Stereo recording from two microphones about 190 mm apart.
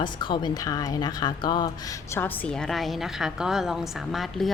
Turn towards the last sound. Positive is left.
turn(degrees=0)  # may be behind; listen again after turning